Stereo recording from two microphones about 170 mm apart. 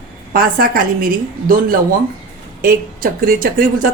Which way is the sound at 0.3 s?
60° right (ahead or behind).